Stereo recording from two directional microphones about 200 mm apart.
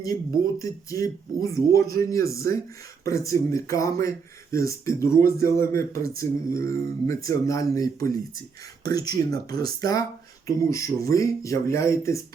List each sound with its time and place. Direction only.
0.6 s speech: 15° left (ahead or behind)